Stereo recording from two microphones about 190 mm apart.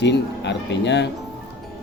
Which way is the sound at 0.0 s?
65° left (ahead or behind).